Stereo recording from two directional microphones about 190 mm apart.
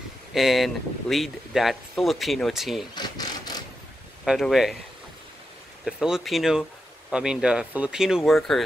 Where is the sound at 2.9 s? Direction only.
20° left (ahead or behind).